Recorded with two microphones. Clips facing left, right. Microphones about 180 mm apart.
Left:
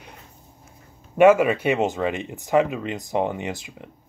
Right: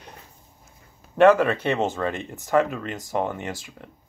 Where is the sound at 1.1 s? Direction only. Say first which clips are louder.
Left 1 dB; 10° left (ahead or behind).